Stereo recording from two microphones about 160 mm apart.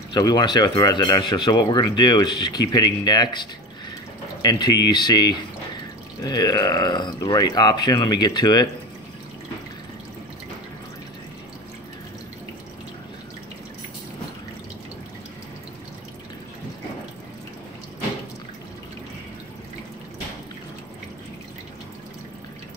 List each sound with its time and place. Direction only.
0.1 s speech: 25° left (ahead or behind)